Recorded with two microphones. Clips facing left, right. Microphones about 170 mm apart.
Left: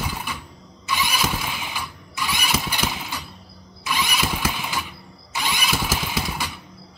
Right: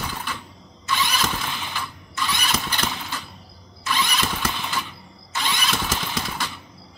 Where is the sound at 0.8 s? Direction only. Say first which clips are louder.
Even; 10° left (ahead or behind).